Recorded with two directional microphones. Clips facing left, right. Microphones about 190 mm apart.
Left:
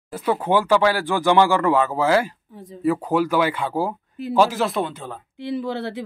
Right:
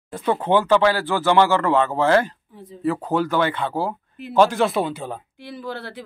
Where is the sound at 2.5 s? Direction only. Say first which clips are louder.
Left 1 dB; 45° left (ahead or behind).